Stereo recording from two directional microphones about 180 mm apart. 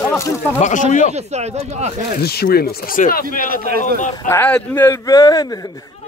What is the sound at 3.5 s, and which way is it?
Speech, 55° right (ahead or behind).